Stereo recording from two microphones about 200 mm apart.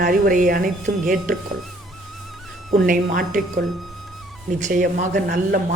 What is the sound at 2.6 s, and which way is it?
Speech, 45° right (ahead or behind).